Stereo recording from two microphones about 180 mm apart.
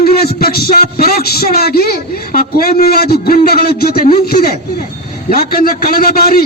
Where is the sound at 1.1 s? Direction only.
55° left (ahead or behind).